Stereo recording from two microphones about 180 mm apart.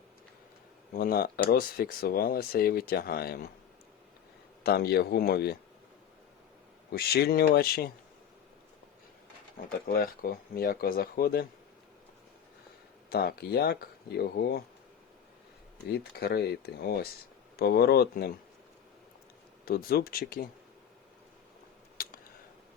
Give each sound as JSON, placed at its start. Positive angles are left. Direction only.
{"t": 0.9, "sound": "speech", "side_deg": 55}
{"t": 4.6, "sound": "speech", "side_deg": 60}
{"t": 6.9, "sound": "speech", "side_deg": 60}
{"t": 9.7, "sound": "speech", "side_deg": 55}
{"t": 13.1, "sound": "speech", "side_deg": 60}
{"t": 15.9, "sound": "speech", "side_deg": 60}
{"t": 19.6, "sound": "speech", "side_deg": 55}
{"t": 22.0, "sound": "a sound", "side_deg": 50}